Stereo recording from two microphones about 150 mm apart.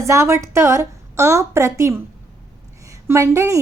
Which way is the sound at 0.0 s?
20° right (ahead or behind).